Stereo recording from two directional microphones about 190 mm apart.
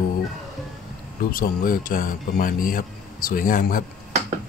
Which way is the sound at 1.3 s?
50° left (ahead or behind).